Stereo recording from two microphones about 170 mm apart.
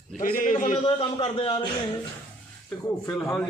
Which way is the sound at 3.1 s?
Centre (ahead or behind).